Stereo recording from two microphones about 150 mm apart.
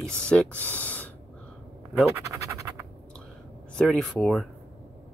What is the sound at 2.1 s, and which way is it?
Scratch, 20° right (ahead or behind).